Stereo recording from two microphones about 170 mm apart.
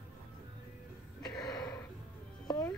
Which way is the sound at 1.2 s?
20° left (ahead or behind).